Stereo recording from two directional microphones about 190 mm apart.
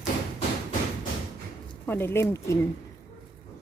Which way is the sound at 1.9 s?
10° left (ahead or behind).